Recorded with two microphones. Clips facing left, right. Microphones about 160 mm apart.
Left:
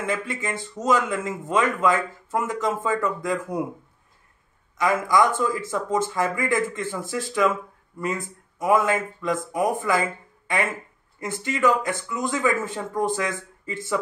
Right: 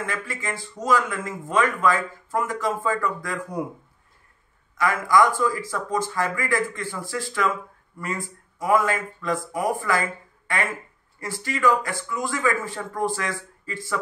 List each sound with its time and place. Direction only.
0.0 s a man's voice: 20° left (ahead or behind)
4.7 s a man's voice: 20° left (ahead or behind)